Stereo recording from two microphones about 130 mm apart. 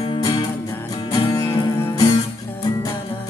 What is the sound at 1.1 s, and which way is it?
Music, 30° left (ahead or behind).